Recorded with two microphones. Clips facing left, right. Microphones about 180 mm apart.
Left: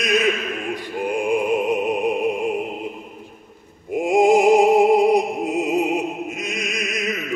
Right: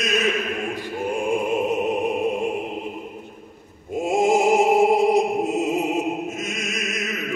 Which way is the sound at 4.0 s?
15° left (ahead or behind).